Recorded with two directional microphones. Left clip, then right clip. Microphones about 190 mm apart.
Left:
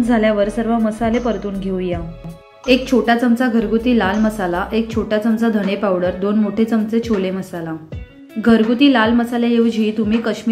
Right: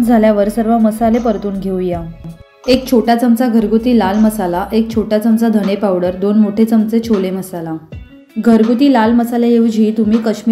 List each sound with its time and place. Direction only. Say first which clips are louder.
0.1 s a woman's voice: right 5 dB; 25° right (ahead or behind)
2.6 s a woman's voice: right 3 dB; 30° right (ahead or behind)